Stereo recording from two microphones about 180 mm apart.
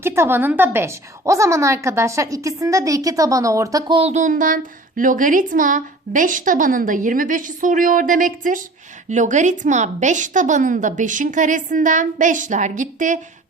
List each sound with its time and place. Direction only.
0.0 s a woman's voice: 15° right (ahead or behind); by 13.1 s 45° right (ahead or behind)